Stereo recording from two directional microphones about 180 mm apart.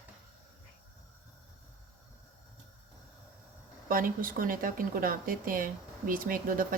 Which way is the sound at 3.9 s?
50° right (ahead or behind).